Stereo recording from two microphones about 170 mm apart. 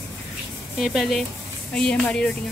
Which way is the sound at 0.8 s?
Centre (ahead or behind).